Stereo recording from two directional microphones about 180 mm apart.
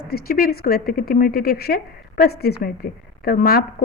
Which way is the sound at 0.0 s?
55° left (ahead or behind).